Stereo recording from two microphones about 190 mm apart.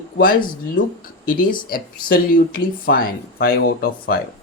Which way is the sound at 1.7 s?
50° left (ahead or behind).